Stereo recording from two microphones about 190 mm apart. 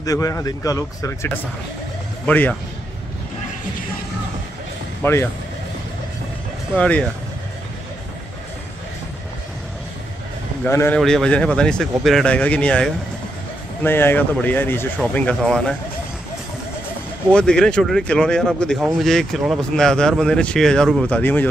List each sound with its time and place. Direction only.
0.0 s speech: 15° left (ahead or behind)
5.0 s speech: 10° left (ahead or behind)
6.8 s speech: 5° left (ahead or behind)
10.6 s speech: 10° left (ahead or behind)
17.3 s speech: 5° left (ahead or behind)